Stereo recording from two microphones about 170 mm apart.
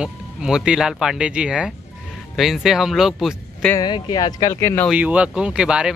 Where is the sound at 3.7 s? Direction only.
25° left (ahead or behind).